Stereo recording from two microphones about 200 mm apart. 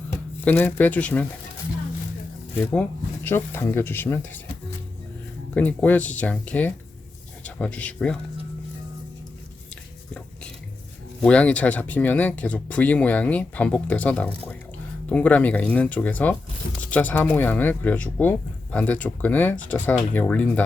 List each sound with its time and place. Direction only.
0.4 s speech: 10° left (ahead or behind)
3.2 s speech: 10° left (ahead or behind)
5.5 s speech: 10° left (ahead or behind)
11.2 s speech: 5° left (ahead or behind)